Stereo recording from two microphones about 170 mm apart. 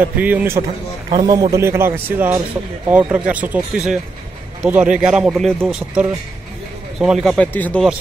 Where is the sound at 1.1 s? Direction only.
25° right (ahead or behind); by 7.8 s 10° left (ahead or behind).